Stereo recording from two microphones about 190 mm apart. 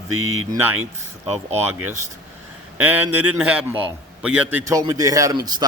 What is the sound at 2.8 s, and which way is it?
A man's voice, 10° right (ahead or behind).